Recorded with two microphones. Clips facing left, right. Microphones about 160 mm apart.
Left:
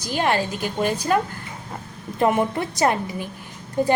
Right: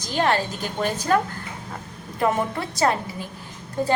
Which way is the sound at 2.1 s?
20° left (ahead or behind).